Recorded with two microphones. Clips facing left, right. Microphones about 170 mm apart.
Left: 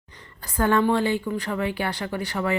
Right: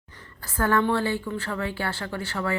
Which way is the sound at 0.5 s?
20° left (ahead or behind).